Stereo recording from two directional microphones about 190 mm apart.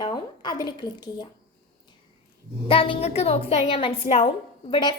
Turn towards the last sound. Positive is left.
turn(degrees=25)  # may be behind; listen again after turning